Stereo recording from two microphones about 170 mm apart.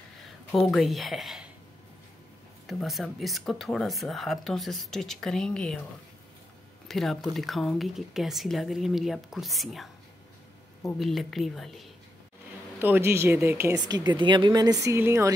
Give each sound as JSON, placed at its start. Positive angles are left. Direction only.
{"t": 0.2, "sound": "speech", "side_deg": 0}
{"t": 2.6, "sound": "speech", "side_deg": 0}
{"t": 6.9, "sound": "speech", "side_deg": 0}
{"t": 11.0, "sound": "speech", "side_deg": 0}
{"t": 12.7, "sound": "speech", "side_deg": -10}